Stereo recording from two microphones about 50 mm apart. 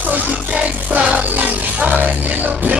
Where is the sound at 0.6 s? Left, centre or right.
Right.